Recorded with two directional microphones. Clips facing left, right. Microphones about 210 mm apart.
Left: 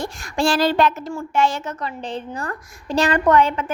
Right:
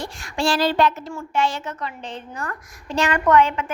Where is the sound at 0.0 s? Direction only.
45° left (ahead or behind).